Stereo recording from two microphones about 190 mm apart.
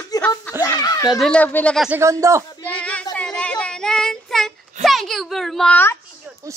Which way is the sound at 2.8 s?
5° left (ahead or behind).